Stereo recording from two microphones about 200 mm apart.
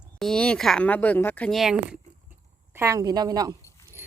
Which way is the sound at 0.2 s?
Centre (ahead or behind).